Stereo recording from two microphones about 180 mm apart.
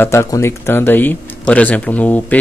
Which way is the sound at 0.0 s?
15° left (ahead or behind).